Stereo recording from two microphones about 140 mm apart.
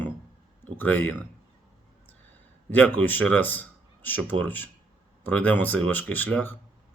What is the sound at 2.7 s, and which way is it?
A man's voice, 10° left (ahead or behind).